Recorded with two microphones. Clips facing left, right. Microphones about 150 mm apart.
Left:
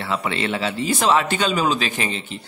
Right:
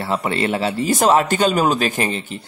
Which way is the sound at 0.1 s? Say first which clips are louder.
Right 3 dB; 40° right (ahead or behind).